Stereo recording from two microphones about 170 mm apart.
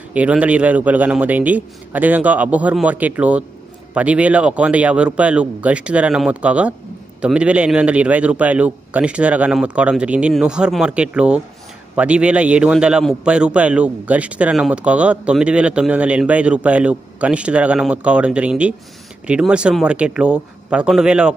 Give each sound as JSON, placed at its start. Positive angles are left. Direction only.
{"t": 0.1, "sound": "a man's voice", "side_deg": -10}